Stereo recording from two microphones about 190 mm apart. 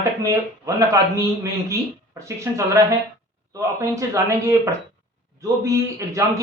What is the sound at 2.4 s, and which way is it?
Speech, 15° right (ahead or behind).